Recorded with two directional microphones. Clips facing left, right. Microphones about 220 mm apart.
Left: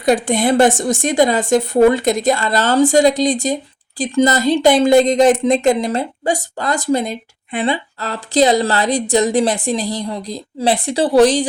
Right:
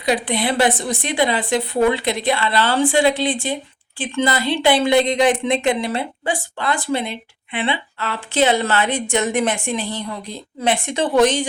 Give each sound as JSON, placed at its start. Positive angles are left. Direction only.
{"t": 0.0, "sound": "a woman's voice", "side_deg": 50}